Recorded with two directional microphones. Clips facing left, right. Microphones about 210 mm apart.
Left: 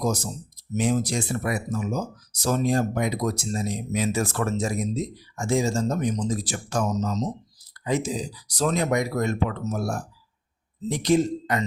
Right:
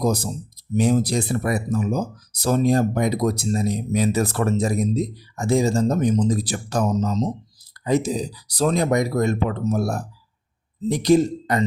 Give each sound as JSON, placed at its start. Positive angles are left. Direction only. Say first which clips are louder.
{"t": 0.0, "sound": "speech", "louder": "right 4 dB", "side_deg": -35}